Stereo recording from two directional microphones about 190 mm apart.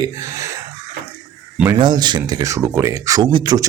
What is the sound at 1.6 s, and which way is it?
A man's voice, 20° right (ahead or behind).